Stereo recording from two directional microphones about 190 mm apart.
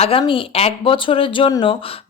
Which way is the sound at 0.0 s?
30° left (ahead or behind).